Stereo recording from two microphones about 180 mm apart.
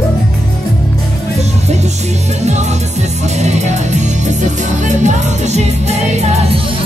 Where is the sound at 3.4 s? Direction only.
40° right (ahead or behind).